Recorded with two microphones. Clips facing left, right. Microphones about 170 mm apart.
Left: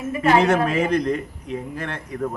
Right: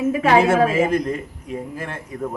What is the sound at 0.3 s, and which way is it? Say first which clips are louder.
Speech: right 3 dB; 5° right (ahead or behind).